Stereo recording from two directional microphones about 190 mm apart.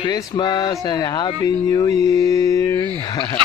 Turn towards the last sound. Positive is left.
turn(degrees=20)  # may be behind; listen again after turning